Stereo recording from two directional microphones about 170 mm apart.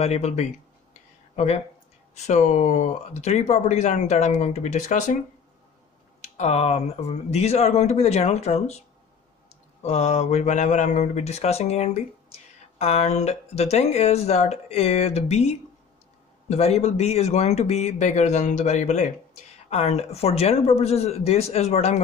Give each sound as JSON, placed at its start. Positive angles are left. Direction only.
{"t": 0.0, "sound": "speech", "side_deg": 40}
{"t": 6.3, "sound": "speech", "side_deg": 40}